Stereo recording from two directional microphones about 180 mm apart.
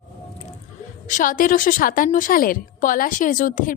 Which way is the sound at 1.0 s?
45° left (ahead or behind).